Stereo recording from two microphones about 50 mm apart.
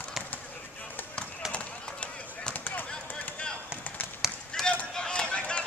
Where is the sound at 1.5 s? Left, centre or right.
Left.